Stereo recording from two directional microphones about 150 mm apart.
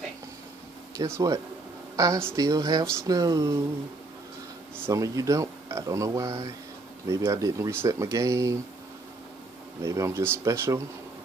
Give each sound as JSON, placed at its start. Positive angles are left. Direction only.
{"t": 0.9, "sound": "speech", "side_deg": -20}
{"t": 4.8, "sound": "speech", "side_deg": -20}
{"t": 9.8, "sound": "speech", "side_deg": -20}